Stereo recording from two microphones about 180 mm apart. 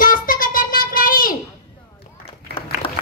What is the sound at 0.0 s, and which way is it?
Child singing, 50° left (ahead or behind).